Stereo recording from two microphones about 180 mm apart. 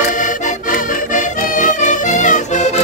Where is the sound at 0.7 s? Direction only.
45° left (ahead or behind).